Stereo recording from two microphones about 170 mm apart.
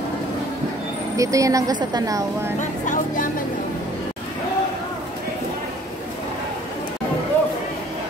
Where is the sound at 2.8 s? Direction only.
50° left (ahead or behind).